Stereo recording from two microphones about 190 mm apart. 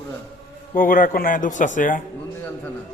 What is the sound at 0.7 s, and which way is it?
Speech, 45° left (ahead or behind).